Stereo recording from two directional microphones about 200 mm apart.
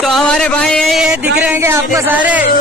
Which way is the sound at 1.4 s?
10° right (ahead or behind).